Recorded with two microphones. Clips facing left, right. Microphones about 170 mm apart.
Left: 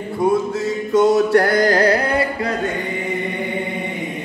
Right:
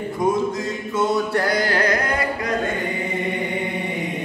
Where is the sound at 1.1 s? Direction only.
80° left.